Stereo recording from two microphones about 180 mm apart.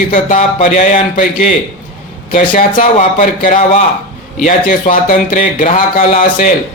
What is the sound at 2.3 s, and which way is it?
Speech, 50° left (ahead or behind).